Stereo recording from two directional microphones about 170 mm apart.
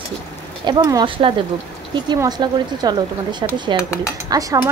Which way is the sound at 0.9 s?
30° right (ahead or behind).